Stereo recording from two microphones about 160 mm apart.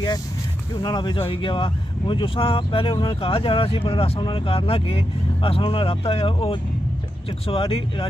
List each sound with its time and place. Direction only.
0.7 s speech: 30° left (ahead or behind)